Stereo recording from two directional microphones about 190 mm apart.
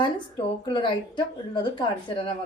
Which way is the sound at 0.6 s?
25° left (ahead or behind).